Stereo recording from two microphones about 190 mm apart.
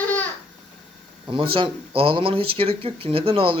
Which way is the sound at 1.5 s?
30° right (ahead or behind).